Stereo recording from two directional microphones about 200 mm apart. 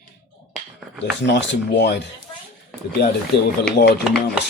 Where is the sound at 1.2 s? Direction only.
60° left (ahead or behind).